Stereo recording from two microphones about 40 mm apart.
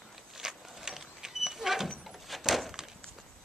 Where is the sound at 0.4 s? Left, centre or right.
Centre.